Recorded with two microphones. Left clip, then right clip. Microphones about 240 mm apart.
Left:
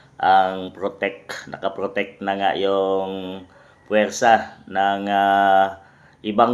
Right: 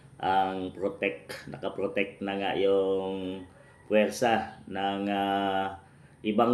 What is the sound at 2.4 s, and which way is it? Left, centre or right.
Speech, centre.